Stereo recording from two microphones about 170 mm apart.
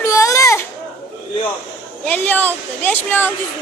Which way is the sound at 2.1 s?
10° left (ahead or behind).